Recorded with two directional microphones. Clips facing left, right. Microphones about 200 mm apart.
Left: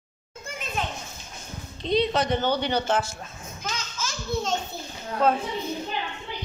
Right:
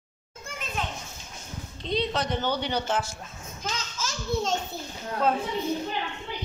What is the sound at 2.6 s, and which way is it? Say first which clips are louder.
Speech: left 3 dB; 60° left (ahead or behind).